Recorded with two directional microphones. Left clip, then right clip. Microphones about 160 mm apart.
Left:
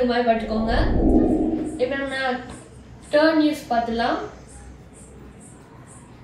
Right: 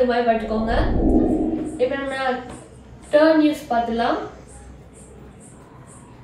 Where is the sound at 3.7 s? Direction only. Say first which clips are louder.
Even; 10° right (ahead or behind).